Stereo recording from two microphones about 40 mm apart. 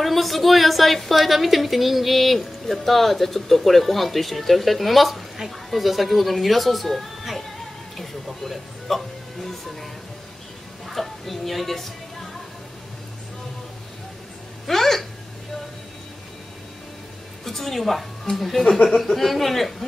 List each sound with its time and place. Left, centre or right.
0.0 s a woman's voice: centre
8.0 s music: centre
10.9 s speech: centre
14.7 s a sound: centre
17.5 s a woman's voice: centre